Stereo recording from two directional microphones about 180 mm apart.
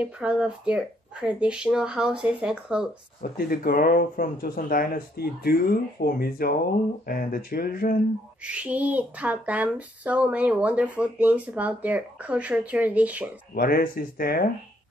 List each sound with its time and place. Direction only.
0.0 s speech: 5° right (ahead or behind)
3.2 s speech: 55° left (ahead or behind)
8.4 s speech: 5° right (ahead or behind)
13.6 s speech: 55° left (ahead or behind)